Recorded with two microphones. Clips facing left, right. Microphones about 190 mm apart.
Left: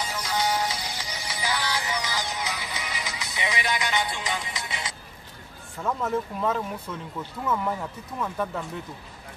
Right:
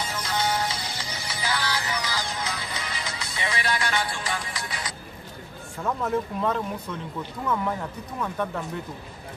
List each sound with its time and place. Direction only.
0.0 s music: 10° left (ahead or behind)
5.8 s speech: centre (ahead or behind)